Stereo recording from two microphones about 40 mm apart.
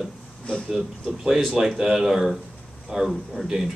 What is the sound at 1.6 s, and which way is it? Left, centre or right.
Speech, centre.